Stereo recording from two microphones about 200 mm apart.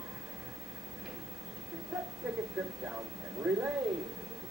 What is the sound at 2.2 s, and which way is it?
Speech, 5° right (ahead or behind).